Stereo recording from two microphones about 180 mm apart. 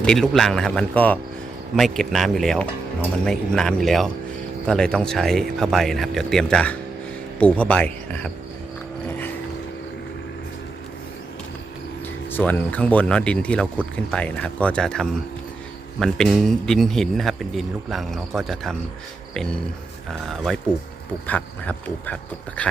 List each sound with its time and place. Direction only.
0.0 s a man's voice: 5° left (ahead or behind)
12.3 s a man's voice: 10° left (ahead or behind)
19.3 s a sound: 5° left (ahead or behind)
20.1 s a man's voice: centre (ahead or behind)